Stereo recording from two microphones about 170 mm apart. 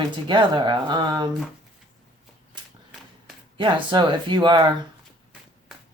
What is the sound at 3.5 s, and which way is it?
Speech, 25° right (ahead or behind).